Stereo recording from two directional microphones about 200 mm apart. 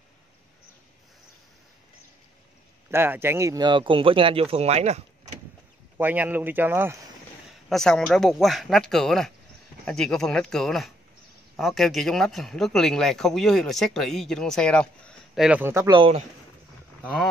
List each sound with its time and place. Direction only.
2.9 s speech: 10° right (ahead or behind); by 5.4 s 35° right (ahead or behind)
5.9 s speech: 10° right (ahead or behind)
7.7 s speech: centre (ahead or behind); by 16.2 s 25° right (ahead or behind)
17.0 s speech: centre (ahead or behind)